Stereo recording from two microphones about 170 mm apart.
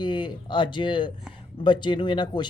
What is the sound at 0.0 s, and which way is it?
Speech, 25° left (ahead or behind).